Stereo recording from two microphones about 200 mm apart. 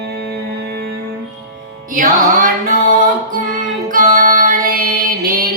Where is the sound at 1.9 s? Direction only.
40° right (ahead or behind).